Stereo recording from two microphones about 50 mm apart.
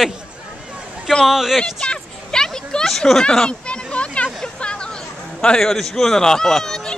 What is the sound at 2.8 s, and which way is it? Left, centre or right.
Speech, centre.